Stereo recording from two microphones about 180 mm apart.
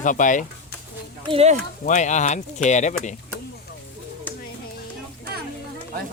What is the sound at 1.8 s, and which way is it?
Speech, 40° left (ahead or behind).